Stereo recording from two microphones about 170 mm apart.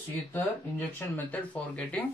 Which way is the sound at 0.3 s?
10° left (ahead or behind).